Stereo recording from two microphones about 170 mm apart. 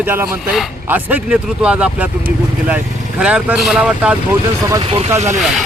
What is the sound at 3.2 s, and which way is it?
Speech, 5° right (ahead or behind).